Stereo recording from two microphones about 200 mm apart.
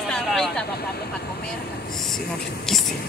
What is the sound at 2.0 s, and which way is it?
Speech, centre (ahead or behind).